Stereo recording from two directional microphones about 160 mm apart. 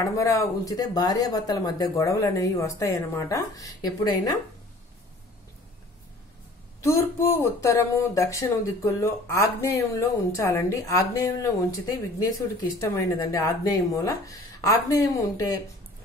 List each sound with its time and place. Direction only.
0.0 s speech: 20° left (ahead or behind)
6.8 s speech: 15° left (ahead or behind)